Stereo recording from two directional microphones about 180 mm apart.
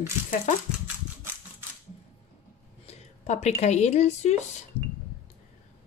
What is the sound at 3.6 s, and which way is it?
Speech, 40° left (ahead or behind).